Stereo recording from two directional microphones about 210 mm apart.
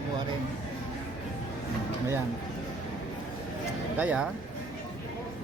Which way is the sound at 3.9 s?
5° right (ahead or behind).